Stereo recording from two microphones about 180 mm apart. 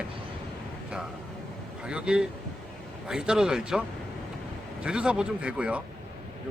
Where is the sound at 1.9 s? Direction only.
5° right (ahead or behind).